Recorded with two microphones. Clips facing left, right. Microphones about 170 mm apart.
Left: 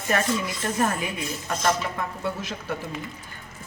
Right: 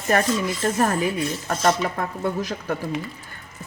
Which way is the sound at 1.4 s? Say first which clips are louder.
Right 3 dB; 40° right (ahead or behind).